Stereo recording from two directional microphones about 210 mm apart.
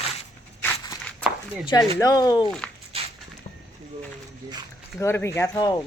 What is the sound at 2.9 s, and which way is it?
Walk, 25° right (ahead or behind).